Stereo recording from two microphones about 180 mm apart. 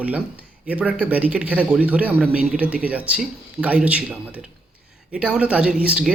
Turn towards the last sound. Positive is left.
turn(degrees=-5)  # may be behind; listen again after turning